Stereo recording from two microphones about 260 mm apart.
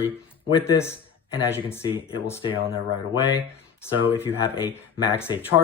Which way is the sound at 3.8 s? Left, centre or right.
Centre.